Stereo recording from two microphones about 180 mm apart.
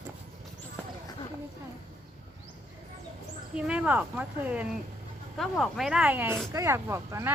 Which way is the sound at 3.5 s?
5° right (ahead or behind).